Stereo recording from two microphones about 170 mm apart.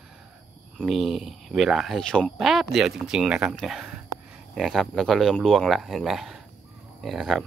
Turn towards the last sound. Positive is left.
turn(degrees=0)  # may be behind; listen again after turning